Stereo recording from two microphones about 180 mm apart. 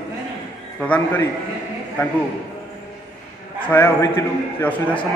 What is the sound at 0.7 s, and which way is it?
Speech, 10° left (ahead or behind).